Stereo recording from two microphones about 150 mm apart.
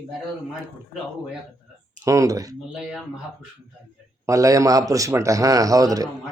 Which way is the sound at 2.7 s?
Centre (ahead or behind).